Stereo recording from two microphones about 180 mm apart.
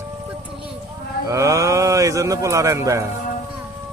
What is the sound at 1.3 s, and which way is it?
Speech, 15° right (ahead or behind).